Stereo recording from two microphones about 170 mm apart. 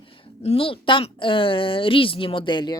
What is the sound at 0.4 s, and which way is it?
A woman's voice, 35° left (ahead or behind).